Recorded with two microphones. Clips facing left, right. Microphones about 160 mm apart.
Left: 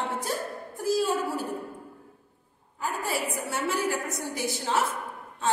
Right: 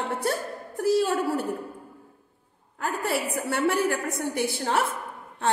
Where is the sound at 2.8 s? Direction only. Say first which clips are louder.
Right 3 dB; 70° right (ahead or behind).